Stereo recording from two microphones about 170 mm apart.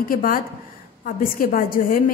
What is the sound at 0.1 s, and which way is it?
A woman's voice, 55° left (ahead or behind).